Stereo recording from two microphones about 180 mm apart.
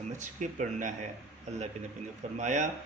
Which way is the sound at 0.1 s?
40° right (ahead or behind).